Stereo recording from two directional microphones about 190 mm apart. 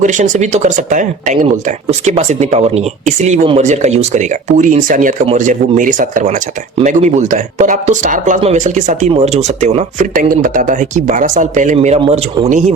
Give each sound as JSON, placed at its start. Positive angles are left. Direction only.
{"t": 0.0, "sound": "speech", "side_deg": -40}